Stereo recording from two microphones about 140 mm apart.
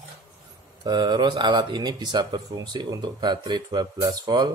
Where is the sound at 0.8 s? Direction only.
30° right (ahead or behind).